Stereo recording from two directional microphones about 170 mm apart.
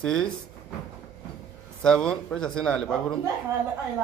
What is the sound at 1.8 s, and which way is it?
A man's voice, 5° left (ahead or behind).